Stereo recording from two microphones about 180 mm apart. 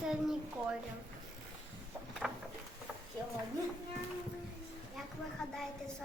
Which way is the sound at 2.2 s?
5° right (ahead or behind).